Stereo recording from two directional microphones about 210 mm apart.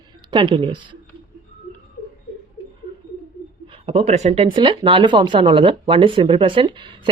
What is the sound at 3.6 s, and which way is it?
Speech, 25° right (ahead or behind).